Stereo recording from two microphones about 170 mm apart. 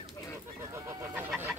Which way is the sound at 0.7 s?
15° right (ahead or behind).